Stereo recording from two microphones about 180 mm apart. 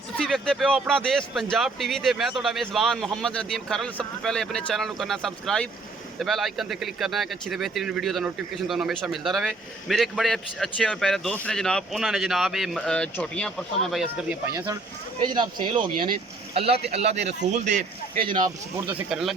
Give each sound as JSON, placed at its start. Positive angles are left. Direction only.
{"t": 0.2, "sound": "speech", "side_deg": 0}
{"t": 15.2, "sound": "speech", "side_deg": -25}
{"t": 18.3, "sound": "speech", "side_deg": -25}
{"t": 18.9, "sound": "speech", "side_deg": -5}